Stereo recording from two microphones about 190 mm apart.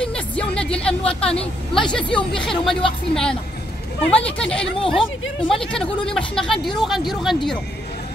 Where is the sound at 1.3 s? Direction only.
30° left (ahead or behind).